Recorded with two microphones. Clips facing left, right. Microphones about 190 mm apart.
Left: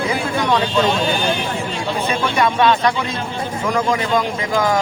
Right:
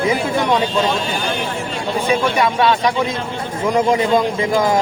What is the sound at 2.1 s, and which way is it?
Speech, 5° right (ahead or behind).